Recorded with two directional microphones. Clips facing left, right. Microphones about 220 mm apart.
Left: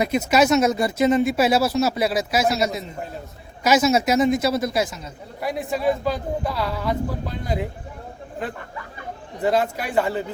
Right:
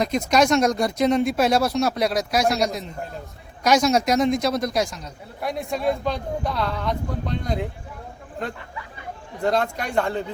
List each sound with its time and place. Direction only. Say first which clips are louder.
0.0 s a man's voice: left 1 dB; 5° left (ahead or behind)